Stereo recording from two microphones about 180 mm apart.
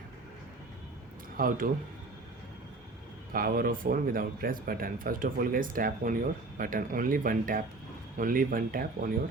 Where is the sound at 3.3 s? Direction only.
55° right (ahead or behind).